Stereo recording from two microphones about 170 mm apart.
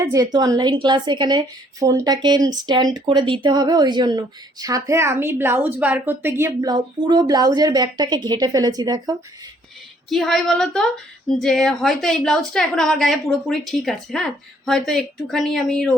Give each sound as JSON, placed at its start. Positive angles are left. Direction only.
{"t": 0.0, "sound": "a woman's voice", "side_deg": -20}
{"t": 10.1, "sound": "a woman's voice", "side_deg": 0}